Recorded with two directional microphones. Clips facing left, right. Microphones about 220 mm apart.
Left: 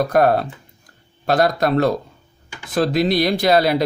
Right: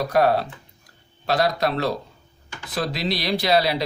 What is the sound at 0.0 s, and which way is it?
Speech, 50° left (ahead or behind).